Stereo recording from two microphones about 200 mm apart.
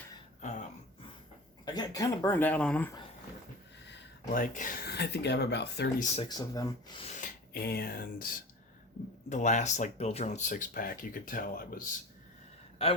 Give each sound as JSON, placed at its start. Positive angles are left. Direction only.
{"t": 1.6, "sound": "speech", "side_deg": 20}
{"t": 3.8, "sound": "a sound", "side_deg": 60}
{"t": 4.4, "sound": "speech", "side_deg": 40}
{"t": 6.2, "sound": "speech", "side_deg": 20}
{"t": 7.0, "sound": "filing", "side_deg": 35}
{"t": 7.5, "sound": "speech", "side_deg": 50}
{"t": 9.3, "sound": "speech", "side_deg": 35}
{"t": 12.8, "sound": "speech", "side_deg": 30}